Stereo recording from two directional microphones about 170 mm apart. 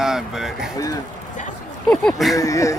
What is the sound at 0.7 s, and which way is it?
Speech, 20° left (ahead or behind).